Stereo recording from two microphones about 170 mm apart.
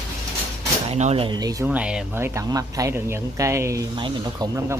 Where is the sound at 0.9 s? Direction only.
35° right (ahead or behind); by 1.6 s 20° right (ahead or behind).